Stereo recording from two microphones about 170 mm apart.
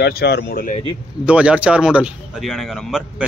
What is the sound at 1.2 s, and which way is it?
Speech, 5° right (ahead or behind).